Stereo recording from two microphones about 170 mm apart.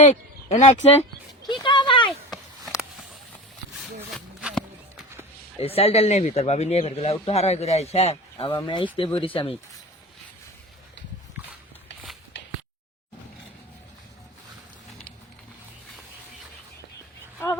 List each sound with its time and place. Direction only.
0.0 s speech: 45° left (ahead or behind)
1.6 s speech: 30° left (ahead or behind)
3.8 s a sound: 5° right (ahead or behind)
5.5 s speech: 35° left (ahead or behind)